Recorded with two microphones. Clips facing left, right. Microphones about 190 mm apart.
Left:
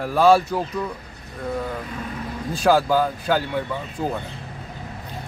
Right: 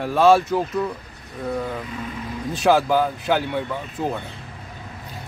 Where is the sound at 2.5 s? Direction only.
Centre (ahead or behind).